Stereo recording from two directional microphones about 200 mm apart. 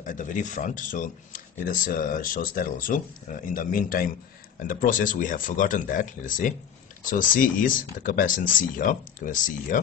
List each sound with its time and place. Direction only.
0.0 s speech: 40° left (ahead or behind)